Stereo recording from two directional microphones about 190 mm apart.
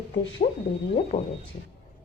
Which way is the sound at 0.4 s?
35° left (ahead or behind).